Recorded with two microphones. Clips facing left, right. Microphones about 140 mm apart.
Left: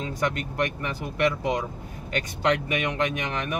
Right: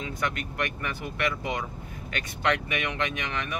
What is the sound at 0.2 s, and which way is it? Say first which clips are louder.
Speech: left 5 dB; 35° left (ahead or behind).